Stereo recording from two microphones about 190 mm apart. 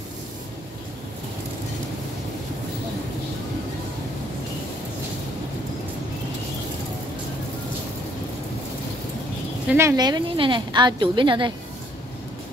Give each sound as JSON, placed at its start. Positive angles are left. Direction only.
{"t": 9.7, "sound": "a woman's voice", "side_deg": -15}